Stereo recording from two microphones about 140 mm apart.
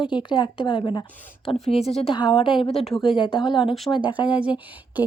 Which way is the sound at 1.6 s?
45° left (ahead or behind).